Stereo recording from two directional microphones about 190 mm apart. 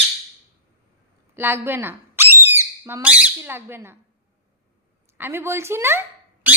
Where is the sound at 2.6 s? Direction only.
15° right (ahead or behind).